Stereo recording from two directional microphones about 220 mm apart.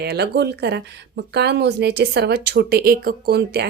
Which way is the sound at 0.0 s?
45° right (ahead or behind).